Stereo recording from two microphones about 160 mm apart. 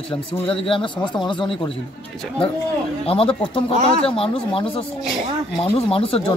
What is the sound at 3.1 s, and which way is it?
Speech, 35° left (ahead or behind).